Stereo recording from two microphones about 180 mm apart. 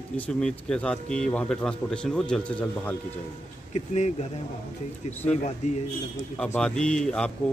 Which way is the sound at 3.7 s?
40° left (ahead or behind).